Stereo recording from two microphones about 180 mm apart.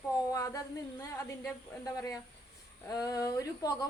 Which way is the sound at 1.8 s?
20° left (ahead or behind).